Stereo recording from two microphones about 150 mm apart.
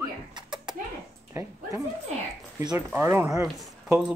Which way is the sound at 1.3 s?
20° right (ahead or behind).